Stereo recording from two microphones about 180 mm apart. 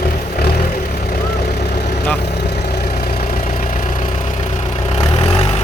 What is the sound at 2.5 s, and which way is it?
Vehicle, 60° left (ahead or behind).